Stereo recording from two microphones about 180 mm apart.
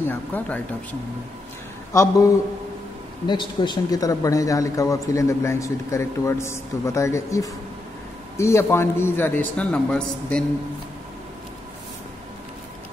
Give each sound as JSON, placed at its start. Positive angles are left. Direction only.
{"t": 0.0, "sound": "a man's voice", "side_deg": 10}
{"t": 1.9, "sound": "a man's voice", "side_deg": 15}